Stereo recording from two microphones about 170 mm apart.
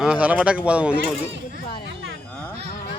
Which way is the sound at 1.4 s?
55° left (ahead or behind).